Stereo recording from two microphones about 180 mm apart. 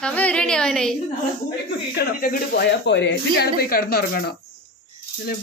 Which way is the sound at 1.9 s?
65° left (ahead or behind).